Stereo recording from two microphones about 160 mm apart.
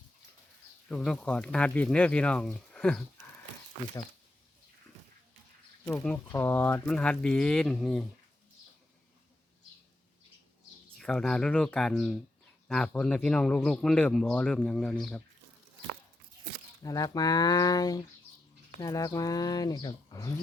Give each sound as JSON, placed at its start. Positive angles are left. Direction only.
{"t": 0.9, "sound": "speech", "side_deg": 5}
{"t": 6.2, "sound": "speech", "side_deg": 15}
{"t": 10.9, "sound": "speech", "side_deg": 5}
{"t": 16.8, "sound": "speech", "side_deg": 25}